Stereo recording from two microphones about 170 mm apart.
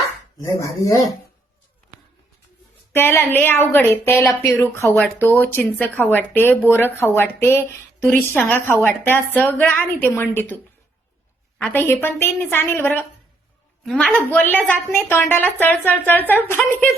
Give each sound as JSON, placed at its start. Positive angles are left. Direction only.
{"t": 0.8, "sound": "speech", "side_deg": 20}
{"t": 2.9, "sound": "a woman's voice", "side_deg": 15}